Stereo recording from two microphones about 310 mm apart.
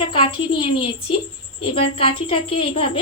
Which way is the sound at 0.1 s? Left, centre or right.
Centre.